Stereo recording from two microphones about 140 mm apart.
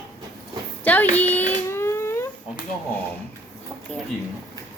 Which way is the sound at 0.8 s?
10° left (ahead or behind).